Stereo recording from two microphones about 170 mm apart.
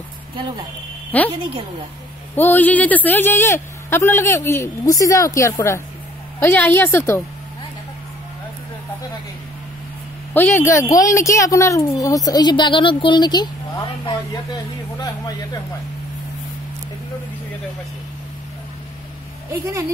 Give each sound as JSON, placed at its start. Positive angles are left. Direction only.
{"t": 1.1, "sound": "a man's voice", "side_deg": 10}
{"t": 2.3, "sound": "a man's voice", "side_deg": 10}
{"t": 10.3, "sound": "speech", "side_deg": 10}